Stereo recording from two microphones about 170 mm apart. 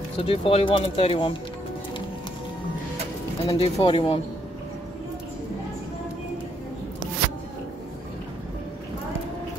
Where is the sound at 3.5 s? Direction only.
30° left (ahead or behind).